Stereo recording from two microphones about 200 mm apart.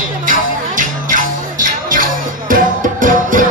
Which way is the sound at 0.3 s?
40° right (ahead or behind).